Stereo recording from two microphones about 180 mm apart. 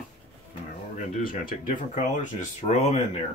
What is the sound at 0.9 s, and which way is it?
Speech, 50° left (ahead or behind).